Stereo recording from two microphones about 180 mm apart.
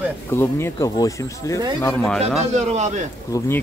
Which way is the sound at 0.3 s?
15° left (ahead or behind).